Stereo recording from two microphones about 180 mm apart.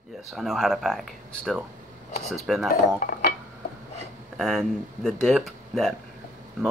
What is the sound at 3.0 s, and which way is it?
Mechanisms, 50° left (ahead or behind).